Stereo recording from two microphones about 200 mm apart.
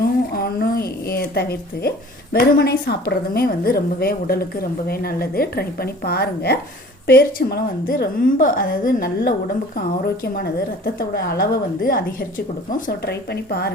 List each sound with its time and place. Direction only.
0.0 s a sound: 50° left (ahead or behind)
2.3 s a woman's voice: 50° left (ahead or behind)
11.1 s a woman's voice: 50° left (ahead or behind)